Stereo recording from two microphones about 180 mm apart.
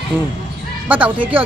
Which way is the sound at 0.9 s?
10° right (ahead or behind).